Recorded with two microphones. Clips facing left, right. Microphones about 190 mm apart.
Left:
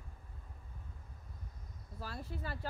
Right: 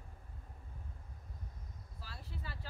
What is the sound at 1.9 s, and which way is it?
Speech, 50° left (ahead or behind).